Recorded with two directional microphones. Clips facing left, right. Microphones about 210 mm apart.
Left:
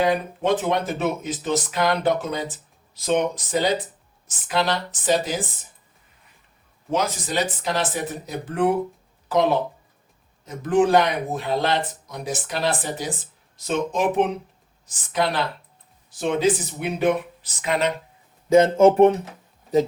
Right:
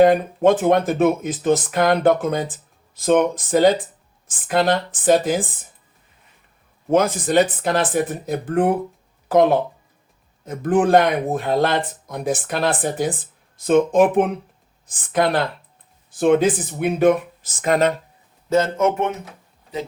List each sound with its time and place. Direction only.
0.0 s speech: 50° right (ahead or behind)
6.9 s speech: 55° right (ahead or behind)
18.4 s speech: 15° left (ahead or behind)
18.8 s speech: 35° left (ahead or behind)